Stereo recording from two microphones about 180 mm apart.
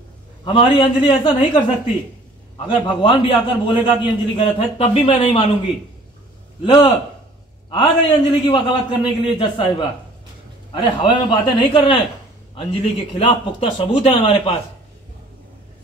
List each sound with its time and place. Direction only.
0.5 s a man's voice: 30° left (ahead or behind)
2.9 s a man's voice: 30° left (ahead or behind)
6.6 s a man's voice: 25° left (ahead or behind)